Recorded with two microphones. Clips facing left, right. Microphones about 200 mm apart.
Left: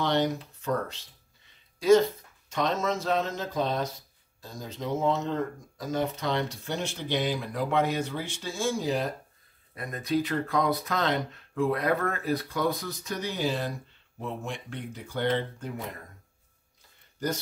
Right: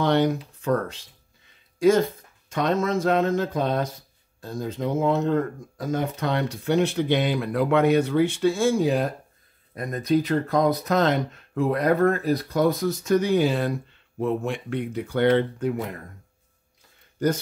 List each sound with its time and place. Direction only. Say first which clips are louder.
0.0 s speech: right 5 dB; 55° right (ahead or behind)
1.8 s speech: right 1 dB; 50° right (ahead or behind)
9.8 s speech: right 6 dB; 40° right (ahead or behind); by 15.7 s 60° right (ahead or behind)